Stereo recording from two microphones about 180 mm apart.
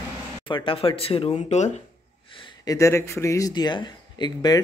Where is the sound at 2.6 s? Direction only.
15° left (ahead or behind).